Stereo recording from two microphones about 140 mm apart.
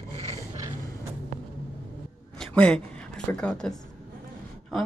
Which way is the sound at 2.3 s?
5° left (ahead or behind).